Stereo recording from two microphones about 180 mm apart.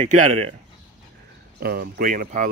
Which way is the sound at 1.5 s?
60° right (ahead or behind).